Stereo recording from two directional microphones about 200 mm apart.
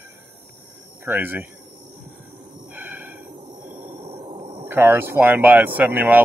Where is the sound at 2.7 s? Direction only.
10° right (ahead or behind).